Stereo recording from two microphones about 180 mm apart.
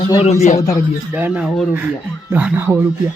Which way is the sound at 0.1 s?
35° left (ahead or behind).